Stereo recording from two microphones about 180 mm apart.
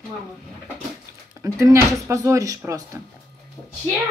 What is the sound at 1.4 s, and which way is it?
Speech, 15° right (ahead or behind).